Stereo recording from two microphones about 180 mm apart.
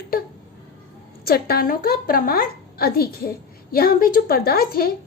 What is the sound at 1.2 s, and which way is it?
A woman's voice, 55° left (ahead or behind).